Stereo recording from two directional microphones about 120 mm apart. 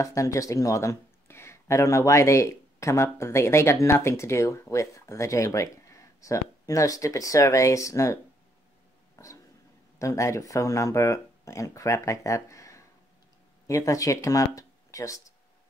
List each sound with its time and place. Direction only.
0.0 s speech: 25° left (ahead or behind)
9.2 s a sound: 25° left (ahead or behind)
9.9 s speech: 25° left (ahead or behind)